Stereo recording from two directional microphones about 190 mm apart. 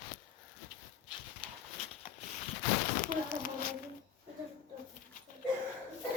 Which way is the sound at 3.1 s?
50° left (ahead or behind).